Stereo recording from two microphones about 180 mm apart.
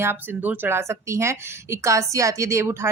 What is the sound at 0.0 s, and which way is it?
Speech, 10° right (ahead or behind).